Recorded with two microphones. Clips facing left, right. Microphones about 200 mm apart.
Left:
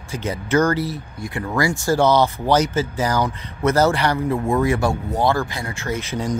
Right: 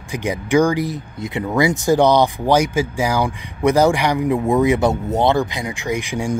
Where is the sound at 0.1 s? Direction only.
15° right (ahead or behind).